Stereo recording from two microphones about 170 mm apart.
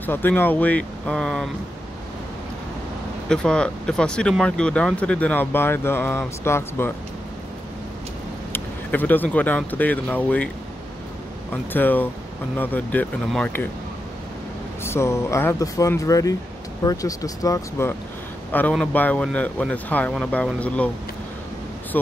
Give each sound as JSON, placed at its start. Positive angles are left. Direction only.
{"t": 0.0, "sound": "speech", "side_deg": 10}
{"t": 3.3, "sound": "speech", "side_deg": 5}
{"t": 8.5, "sound": "speech", "side_deg": 10}
{"t": 11.7, "sound": "speech", "side_deg": 10}
{"t": 14.8, "sound": "a man's voice", "side_deg": 15}